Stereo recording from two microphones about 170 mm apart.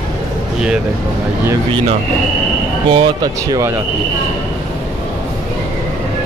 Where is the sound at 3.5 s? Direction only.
15° right (ahead or behind).